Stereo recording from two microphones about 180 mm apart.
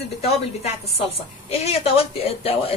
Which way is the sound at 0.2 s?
35° left (ahead or behind).